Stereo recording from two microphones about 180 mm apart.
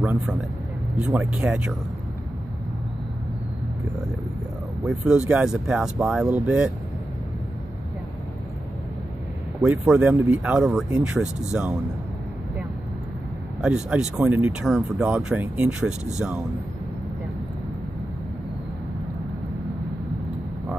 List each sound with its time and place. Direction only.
0.0 s a man's voice: 10° right (ahead or behind)
4.8 s speech: 5° right (ahead or behind)
9.6 s speech: 5° right (ahead or behind)
13.6 s speech: 5° right (ahead or behind)